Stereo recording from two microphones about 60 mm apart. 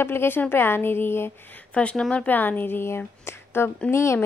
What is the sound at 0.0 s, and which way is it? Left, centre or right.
A woman's voice, left.